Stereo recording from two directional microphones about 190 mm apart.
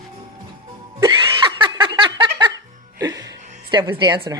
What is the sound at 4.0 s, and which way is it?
Speech, 20° right (ahead or behind).